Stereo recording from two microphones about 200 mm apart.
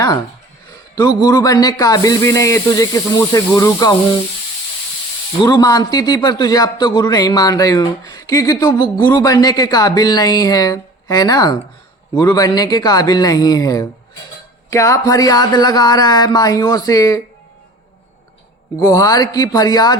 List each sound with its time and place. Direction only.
0.9 s speech: 20° left (ahead or behind)
5.4 s a man's voice: 20° left (ahead or behind)
18.8 s a man's voice: 15° left (ahead or behind)